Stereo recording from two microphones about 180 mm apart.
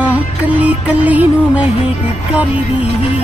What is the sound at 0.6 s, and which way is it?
Music, 10° right (ahead or behind).